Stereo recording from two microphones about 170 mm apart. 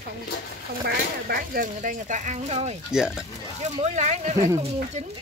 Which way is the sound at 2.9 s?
5° right (ahead or behind).